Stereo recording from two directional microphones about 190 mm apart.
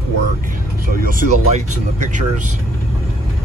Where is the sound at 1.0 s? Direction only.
45° right (ahead or behind).